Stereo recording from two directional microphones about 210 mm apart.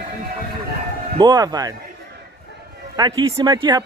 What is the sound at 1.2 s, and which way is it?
Speech, 20° right (ahead or behind).